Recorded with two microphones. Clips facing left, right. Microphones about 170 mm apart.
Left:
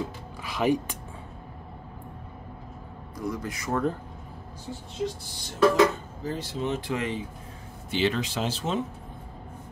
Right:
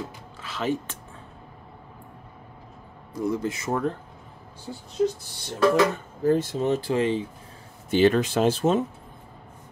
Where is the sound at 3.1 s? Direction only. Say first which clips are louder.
Right 6 dB; 25° right (ahead or behind).